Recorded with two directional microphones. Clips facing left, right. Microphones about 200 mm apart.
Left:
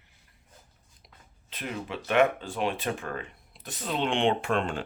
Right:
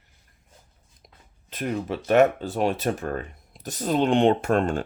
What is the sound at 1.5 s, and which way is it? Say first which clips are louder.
Speech: right 7 dB; 45° right (ahead or behind).